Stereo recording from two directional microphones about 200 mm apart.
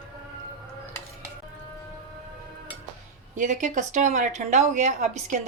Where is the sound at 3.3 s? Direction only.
40° right (ahead or behind).